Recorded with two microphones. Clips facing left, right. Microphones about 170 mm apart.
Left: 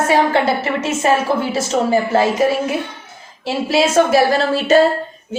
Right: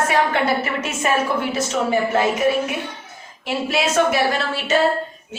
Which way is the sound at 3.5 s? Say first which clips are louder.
Left 5 dB; 30° left (ahead or behind).